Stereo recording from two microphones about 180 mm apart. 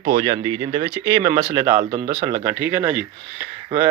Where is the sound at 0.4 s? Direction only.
20° right (ahead or behind).